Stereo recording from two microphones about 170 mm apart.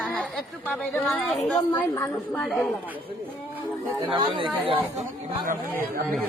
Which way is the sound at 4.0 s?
25° right (ahead or behind).